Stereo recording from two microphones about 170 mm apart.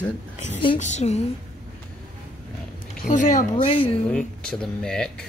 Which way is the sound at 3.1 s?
50° left (ahead or behind).